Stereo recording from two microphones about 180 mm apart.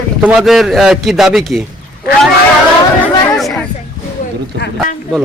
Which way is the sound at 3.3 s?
Centre (ahead or behind).